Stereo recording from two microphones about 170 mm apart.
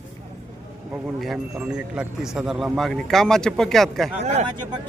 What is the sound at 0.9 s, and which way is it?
Speech, centre (ahead or behind).